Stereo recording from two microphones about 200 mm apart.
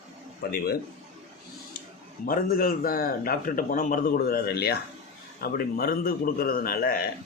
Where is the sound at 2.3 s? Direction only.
45° left (ahead or behind).